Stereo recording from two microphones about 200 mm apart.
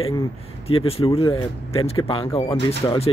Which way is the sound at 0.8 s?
30° left (ahead or behind).